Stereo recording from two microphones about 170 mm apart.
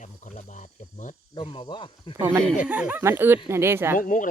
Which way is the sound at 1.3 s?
30° left (ahead or behind).